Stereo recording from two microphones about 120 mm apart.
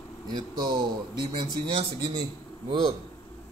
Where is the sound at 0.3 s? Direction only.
40° right (ahead or behind).